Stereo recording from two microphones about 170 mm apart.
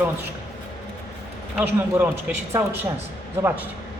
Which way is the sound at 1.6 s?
10° right (ahead or behind).